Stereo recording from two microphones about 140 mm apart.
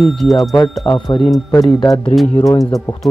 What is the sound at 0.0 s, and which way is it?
Speech, centre (ahead or behind).